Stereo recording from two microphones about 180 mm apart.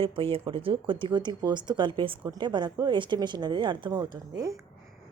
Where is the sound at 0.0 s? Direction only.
30° right (ahead or behind).